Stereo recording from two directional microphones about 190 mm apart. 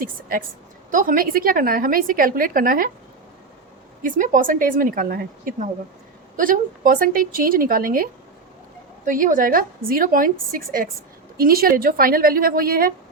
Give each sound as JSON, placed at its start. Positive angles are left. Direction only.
{"t": 0.0, "sound": "a woman's voice", "side_deg": -45}
{"t": 4.0, "sound": "a woman's voice", "side_deg": -45}